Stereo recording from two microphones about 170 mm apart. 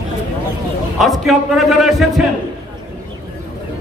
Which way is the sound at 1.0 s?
Centre (ahead or behind).